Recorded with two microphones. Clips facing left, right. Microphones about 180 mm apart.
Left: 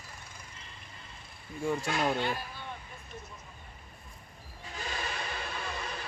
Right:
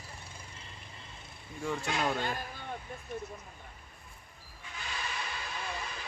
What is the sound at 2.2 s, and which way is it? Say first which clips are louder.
Speech: left 2 dB; 45° right (ahead or behind).